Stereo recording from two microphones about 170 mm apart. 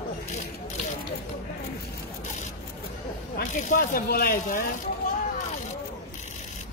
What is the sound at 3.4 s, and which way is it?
Speech, 50° left (ahead or behind).